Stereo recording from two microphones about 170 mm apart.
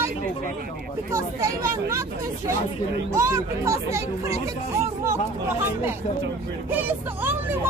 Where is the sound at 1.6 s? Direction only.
15° right (ahead or behind).